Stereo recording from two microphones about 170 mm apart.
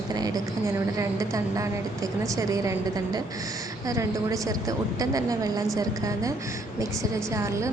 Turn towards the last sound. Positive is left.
turn(degrees=-15)  # may be behind; listen again after turning